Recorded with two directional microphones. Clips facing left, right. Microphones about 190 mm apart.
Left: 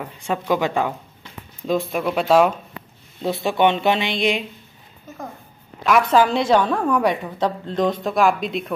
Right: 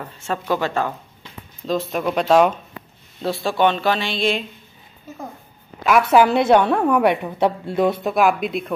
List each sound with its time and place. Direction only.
0.0 s speech: 15° left (ahead or behind)
3.2 s speech: 20° left (ahead or behind)
5.9 s a woman's voice: 5° right (ahead or behind)